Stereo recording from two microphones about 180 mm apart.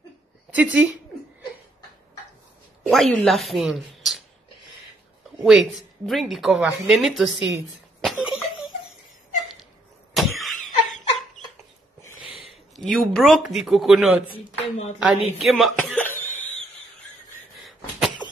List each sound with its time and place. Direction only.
0.5 s speech: 10° right (ahead or behind)
2.9 s speech: centre (ahead or behind)
5.4 s speech: centre (ahead or behind)
8.0 s a sound: centre (ahead or behind)
10.1 s vehicle: centre (ahead or behind)
12.7 s speech: centre (ahead or behind)
14.2 s speech: 30° left (ahead or behind)
15.0 s speech: 5° right (ahead or behind)